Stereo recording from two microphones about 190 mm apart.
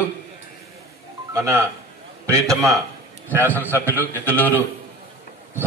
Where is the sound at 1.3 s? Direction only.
15° right (ahead or behind).